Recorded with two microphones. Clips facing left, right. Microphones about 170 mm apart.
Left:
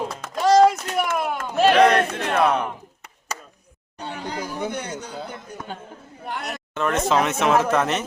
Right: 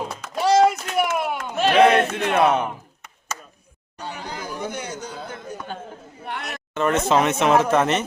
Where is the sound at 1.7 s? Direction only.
5° right (ahead or behind).